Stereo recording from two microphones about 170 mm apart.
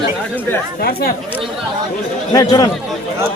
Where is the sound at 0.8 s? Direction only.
60° left (ahead or behind).